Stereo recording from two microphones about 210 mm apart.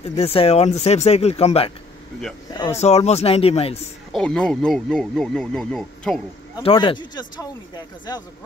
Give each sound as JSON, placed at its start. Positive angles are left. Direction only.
{"t": 0.0, "sound": "speech", "side_deg": 30}
{"t": 4.1, "sound": "speech", "side_deg": 5}
{"t": 6.6, "sound": "speech", "side_deg": 25}